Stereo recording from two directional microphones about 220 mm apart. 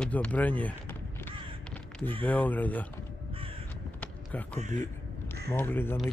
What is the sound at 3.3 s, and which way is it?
Crow, 25° right (ahead or behind).